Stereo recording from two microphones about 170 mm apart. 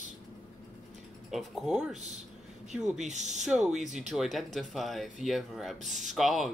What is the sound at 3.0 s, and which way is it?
Speech, 45° right (ahead or behind).